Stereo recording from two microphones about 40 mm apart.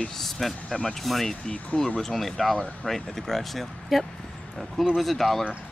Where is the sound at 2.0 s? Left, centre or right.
Centre.